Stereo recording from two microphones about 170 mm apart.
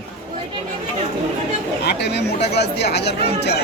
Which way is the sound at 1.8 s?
75° left (ahead or behind).